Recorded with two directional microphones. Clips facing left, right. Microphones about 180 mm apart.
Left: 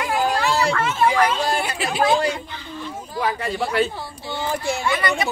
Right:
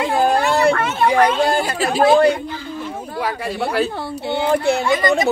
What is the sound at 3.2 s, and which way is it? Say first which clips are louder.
Speech: even; 5° right (ahead or behind).